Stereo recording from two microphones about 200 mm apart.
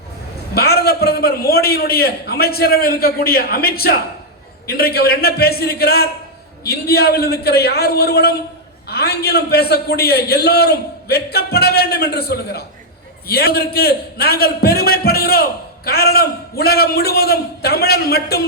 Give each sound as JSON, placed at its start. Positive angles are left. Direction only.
{"t": 0.5, "sound": "a man's voice", "side_deg": 50}